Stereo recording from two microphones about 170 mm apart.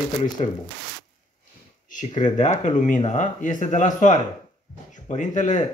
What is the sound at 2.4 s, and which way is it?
Speech, 45° left (ahead or behind).